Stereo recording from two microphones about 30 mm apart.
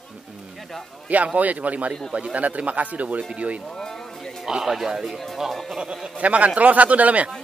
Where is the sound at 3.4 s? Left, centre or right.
Right.